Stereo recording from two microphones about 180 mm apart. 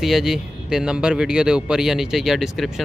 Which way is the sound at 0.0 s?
Centre (ahead or behind).